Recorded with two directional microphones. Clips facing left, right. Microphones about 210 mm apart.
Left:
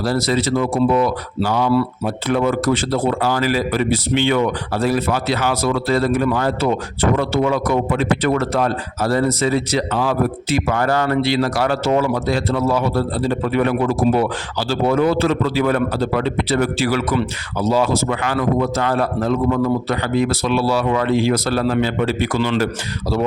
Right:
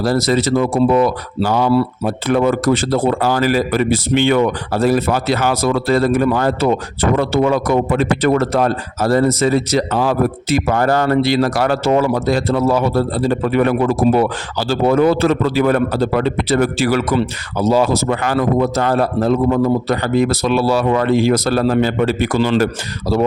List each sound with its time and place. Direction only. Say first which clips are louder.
0.0 s speech: right 3 dB; 45° right (ahead or behind)